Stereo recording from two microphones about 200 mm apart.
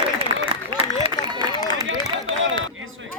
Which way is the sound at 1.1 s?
20° left (ahead or behind).